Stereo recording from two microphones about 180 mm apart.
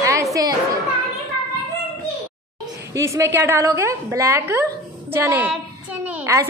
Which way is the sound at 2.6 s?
15° right (ahead or behind).